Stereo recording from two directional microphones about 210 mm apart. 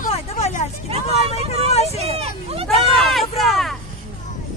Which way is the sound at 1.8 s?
30° right (ahead or behind).